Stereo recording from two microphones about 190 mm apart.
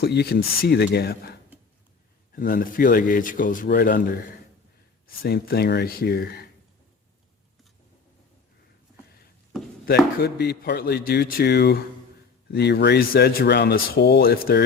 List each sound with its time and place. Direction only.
0.0 s speech: 60° left (ahead or behind)
9.8 s speech: 55° left (ahead or behind)